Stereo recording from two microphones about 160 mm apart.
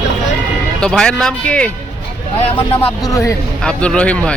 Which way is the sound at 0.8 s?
5° left (ahead or behind).